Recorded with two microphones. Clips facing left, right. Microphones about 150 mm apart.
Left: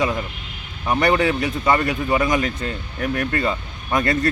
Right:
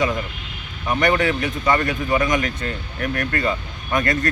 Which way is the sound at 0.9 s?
35° left (ahead or behind).